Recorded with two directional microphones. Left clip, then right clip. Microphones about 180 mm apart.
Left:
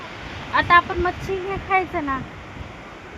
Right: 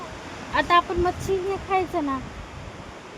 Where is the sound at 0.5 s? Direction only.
20° right (ahead or behind).